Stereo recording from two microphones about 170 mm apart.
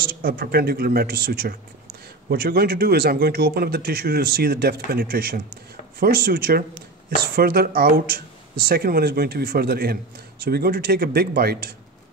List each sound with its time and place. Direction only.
0.0 s speech: 60° right (ahead or behind)